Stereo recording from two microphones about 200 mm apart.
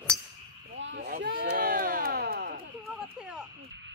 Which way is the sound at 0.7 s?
65° right (ahead or behind).